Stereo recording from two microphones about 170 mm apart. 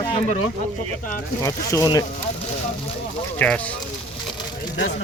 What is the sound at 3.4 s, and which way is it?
Speech, 10° left (ahead or behind).